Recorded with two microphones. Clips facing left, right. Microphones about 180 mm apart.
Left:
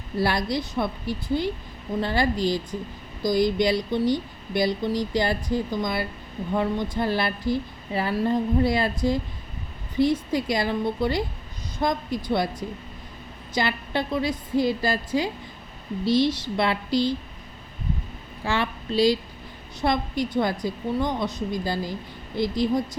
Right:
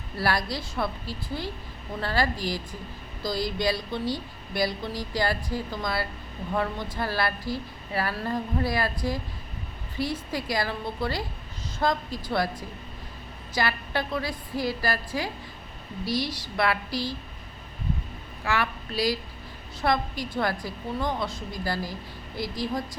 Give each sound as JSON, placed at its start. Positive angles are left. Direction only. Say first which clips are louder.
{"t": 0.2, "sound": "speech", "louder": "left 4 dB", "side_deg": 20}
{"t": 13.5, "sound": "speech", "louder": "left 2 dB", "side_deg": 20}
{"t": 18.4, "sound": "speech", "louder": "left 2 dB", "side_deg": 25}